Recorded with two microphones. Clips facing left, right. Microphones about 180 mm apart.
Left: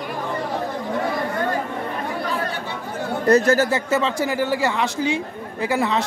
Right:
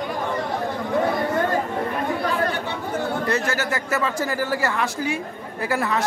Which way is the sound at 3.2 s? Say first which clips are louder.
Left 8 dB; 40° left (ahead or behind).